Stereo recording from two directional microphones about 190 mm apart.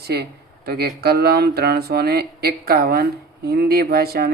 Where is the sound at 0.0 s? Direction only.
55° right (ahead or behind).